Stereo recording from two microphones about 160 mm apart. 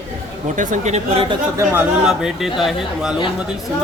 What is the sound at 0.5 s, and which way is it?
Speech, 50° right (ahead or behind).